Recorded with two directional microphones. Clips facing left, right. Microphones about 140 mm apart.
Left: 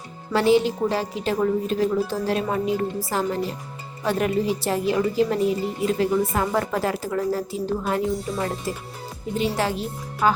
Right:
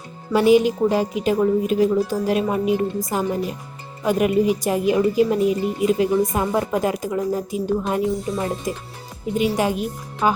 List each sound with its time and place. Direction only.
0.3 s a woman's voice: 15° right (ahead or behind)